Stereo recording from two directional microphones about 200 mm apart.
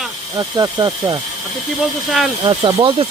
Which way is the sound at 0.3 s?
20° right (ahead or behind).